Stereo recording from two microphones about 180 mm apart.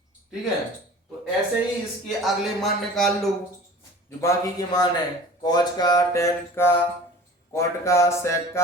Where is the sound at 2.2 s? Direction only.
Centre (ahead or behind).